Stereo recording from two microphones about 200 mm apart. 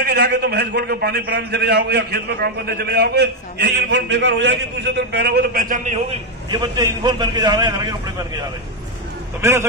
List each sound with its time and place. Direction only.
0.0 s a man's voice: 55° right (ahead or behind)
6.5 s a man's voice: 20° right (ahead or behind)
9.4 s a man's voice: 15° right (ahead or behind)